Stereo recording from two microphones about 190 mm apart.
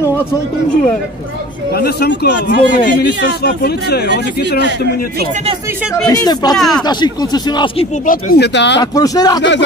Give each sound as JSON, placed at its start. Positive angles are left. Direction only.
{"t": 1.8, "sound": "speech", "side_deg": 55}
{"t": 6.0, "sound": "speech", "side_deg": 20}
{"t": 6.5, "sound": "speech", "side_deg": 0}
{"t": 6.9, "sound": "speech", "side_deg": 25}
{"t": 8.1, "sound": "speech", "side_deg": 65}
{"t": 8.9, "sound": "speech", "side_deg": 20}